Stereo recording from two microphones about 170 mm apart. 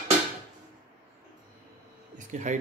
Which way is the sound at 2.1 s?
45° right (ahead or behind).